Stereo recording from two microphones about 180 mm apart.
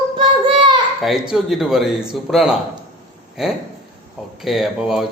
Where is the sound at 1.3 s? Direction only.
5° right (ahead or behind).